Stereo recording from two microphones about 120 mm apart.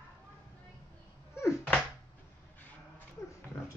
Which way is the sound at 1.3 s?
25° left (ahead or behind).